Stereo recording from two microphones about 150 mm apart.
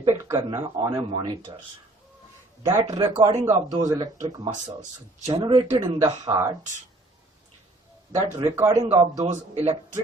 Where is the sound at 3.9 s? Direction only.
25° right (ahead or behind).